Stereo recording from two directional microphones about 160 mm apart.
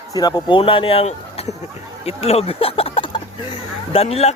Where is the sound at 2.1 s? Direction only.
40° left (ahead or behind).